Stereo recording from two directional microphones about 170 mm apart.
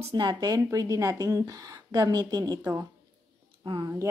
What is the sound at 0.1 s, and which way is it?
Speech, 25° right (ahead or behind).